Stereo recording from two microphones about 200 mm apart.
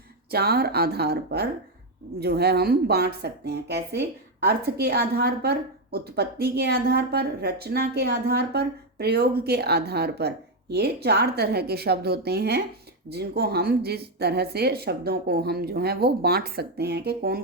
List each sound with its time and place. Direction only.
0.3 s a woman's voice: 50° right (ahead or behind)